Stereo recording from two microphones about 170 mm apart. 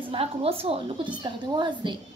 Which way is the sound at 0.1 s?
35° right (ahead or behind).